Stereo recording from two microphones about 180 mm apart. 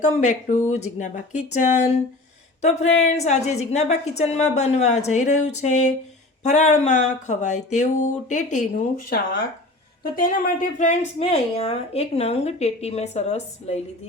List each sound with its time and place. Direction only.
0.0 s a woman's voice: 40° left (ahead or behind)
10.0 s a woman's voice: 50° left (ahead or behind)